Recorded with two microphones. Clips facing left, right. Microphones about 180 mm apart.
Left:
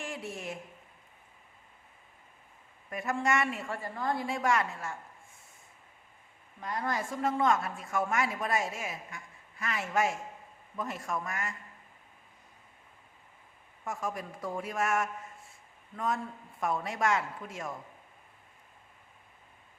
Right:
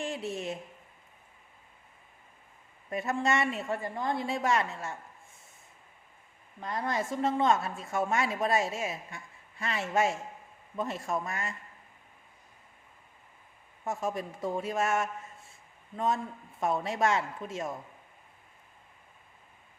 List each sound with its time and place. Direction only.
0.0 s a woman's voice: 25° right (ahead or behind)
2.9 s a woman's voice: 25° right (ahead or behind)
6.6 s a woman's voice: 25° right (ahead or behind)
13.8 s a woman's voice: 25° right (ahead or behind)